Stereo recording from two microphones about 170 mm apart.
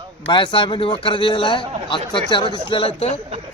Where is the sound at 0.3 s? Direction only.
30° left (ahead or behind).